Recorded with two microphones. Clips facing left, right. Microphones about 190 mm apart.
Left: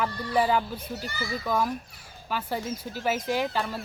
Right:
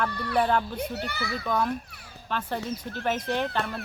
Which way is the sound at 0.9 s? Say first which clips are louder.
Right 1 dB; 65° right (ahead or behind).